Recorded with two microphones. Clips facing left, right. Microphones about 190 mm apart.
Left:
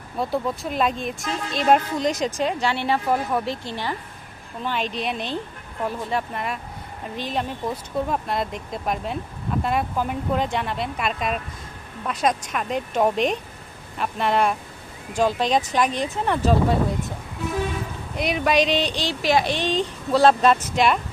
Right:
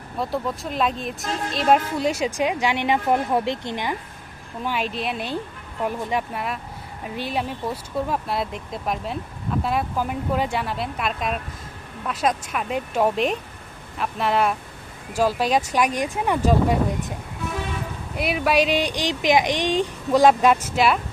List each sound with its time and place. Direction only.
0.2 s speech: centre (ahead or behind); by 3.9 s 20° right (ahead or behind)
4.6 s speech: 5° right (ahead or behind)
18.2 s speech: 5° right (ahead or behind)